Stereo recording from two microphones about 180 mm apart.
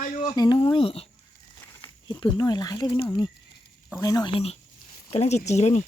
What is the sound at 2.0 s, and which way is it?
Speech, 25° left (ahead or behind).